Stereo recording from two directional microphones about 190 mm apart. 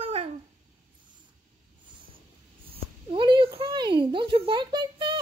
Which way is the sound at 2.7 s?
25° right (ahead or behind).